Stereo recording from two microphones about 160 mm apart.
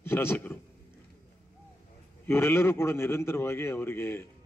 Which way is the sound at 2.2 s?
15° left (ahead or behind).